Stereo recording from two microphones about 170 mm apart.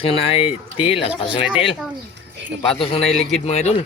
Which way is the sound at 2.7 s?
35° left (ahead or behind).